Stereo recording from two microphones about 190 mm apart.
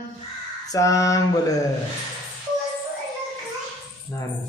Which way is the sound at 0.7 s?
15° left (ahead or behind).